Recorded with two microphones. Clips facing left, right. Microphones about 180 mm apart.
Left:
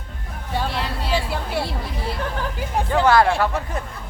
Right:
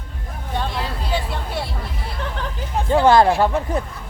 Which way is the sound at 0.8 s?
75° left (ahead or behind).